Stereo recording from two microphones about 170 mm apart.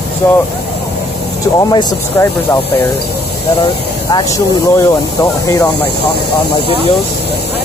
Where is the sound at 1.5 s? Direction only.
20° left (ahead or behind).